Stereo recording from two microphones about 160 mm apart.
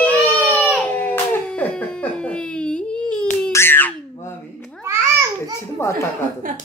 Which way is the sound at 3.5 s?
15° left (ahead or behind).